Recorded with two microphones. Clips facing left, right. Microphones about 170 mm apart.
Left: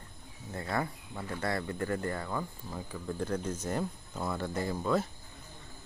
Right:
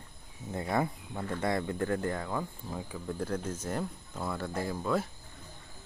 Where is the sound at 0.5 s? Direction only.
20° right (ahead or behind).